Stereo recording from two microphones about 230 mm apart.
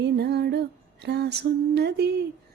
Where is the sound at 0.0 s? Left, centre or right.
Right.